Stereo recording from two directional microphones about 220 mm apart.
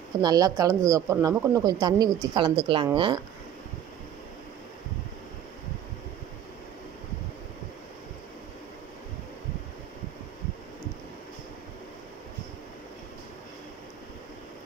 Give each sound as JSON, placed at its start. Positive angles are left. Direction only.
{"t": 0.2, "sound": "speech", "side_deg": -15}